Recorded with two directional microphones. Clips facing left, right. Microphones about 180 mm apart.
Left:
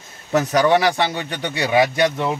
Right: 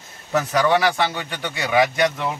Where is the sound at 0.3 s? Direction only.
35° left (ahead or behind).